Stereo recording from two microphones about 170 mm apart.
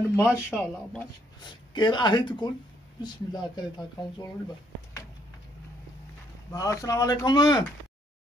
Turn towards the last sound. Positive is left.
turn(degrees=25)  # may be behind; listen again after turning